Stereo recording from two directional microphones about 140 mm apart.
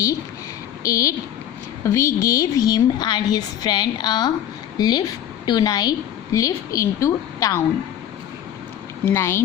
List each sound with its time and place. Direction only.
0.8 s a woman's voice: 25° left (ahead or behind)
9.0 s speech: 15° left (ahead or behind)